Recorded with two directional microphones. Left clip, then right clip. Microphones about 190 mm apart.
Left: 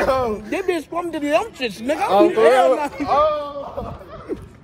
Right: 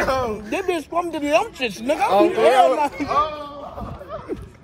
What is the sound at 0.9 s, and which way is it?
Speech, centre (ahead or behind).